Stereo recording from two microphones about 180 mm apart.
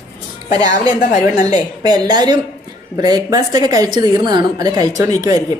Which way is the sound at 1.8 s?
20° right (ahead or behind).